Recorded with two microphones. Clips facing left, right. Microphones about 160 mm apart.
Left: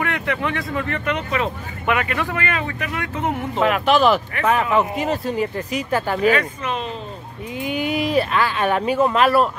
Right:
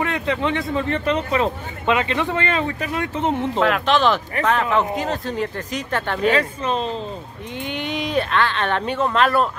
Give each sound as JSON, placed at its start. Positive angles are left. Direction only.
{"t": 0.0, "sound": "speech", "side_deg": -20}
{"t": 3.5, "sound": "speech", "side_deg": 5}
{"t": 6.3, "sound": "speech", "side_deg": -30}
{"t": 7.5, "sound": "speech", "side_deg": 5}